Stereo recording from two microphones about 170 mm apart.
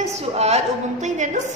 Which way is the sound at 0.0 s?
40° right (ahead or behind).